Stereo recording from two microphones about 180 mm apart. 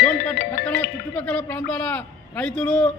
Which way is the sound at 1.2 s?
10° left (ahead or behind).